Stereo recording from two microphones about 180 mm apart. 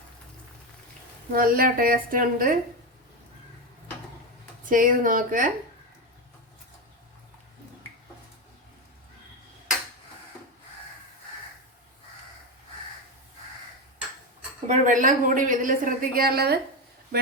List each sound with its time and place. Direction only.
1.3 s a woman's voice: 50° right (ahead or behind)
4.7 s a woman's voice: 50° right (ahead or behind)
14.7 s a woman's voice: 45° right (ahead or behind); by 16.6 s 60° right (ahead or behind)